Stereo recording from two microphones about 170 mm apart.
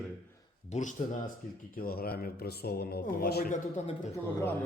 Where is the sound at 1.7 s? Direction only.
60° left (ahead or behind).